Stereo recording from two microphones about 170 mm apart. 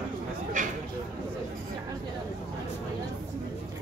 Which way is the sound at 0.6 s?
50° right (ahead or behind).